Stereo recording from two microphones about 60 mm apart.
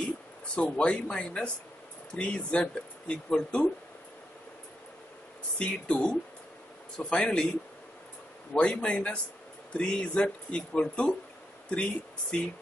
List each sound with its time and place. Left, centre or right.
0.6 s speech: centre
5.6 s speech: left
8.5 s speech: centre